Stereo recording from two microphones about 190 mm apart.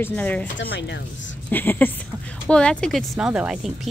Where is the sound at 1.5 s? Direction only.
10° left (ahead or behind).